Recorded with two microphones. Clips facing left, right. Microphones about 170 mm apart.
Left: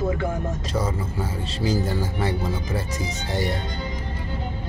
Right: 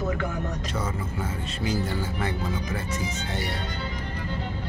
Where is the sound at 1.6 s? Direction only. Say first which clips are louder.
Left 4 dB; 35° left (ahead or behind).